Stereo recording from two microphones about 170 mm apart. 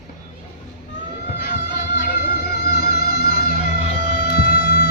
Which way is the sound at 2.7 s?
70° left (ahead or behind).